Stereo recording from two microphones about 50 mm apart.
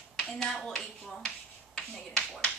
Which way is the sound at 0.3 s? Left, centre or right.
Centre.